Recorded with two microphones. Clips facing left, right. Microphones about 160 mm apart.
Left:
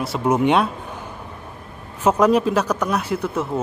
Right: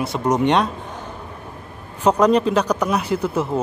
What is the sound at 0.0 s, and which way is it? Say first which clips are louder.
Speech: even; 5° left (ahead or behind).